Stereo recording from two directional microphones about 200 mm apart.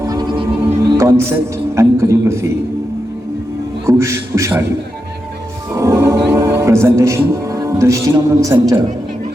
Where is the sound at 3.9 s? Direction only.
15° right (ahead or behind).